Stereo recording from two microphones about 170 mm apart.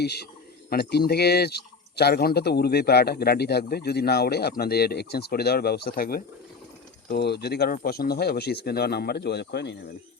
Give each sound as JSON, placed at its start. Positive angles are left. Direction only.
{"t": 0.0, "sound": "speech", "side_deg": 75}
{"t": 7.1, "sound": "speech", "side_deg": 80}